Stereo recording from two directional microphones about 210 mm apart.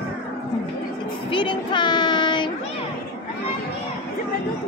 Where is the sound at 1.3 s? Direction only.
25° left (ahead or behind).